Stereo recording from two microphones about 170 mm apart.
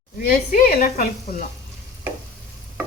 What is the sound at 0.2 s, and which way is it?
Speech, 60° left (ahead or behind).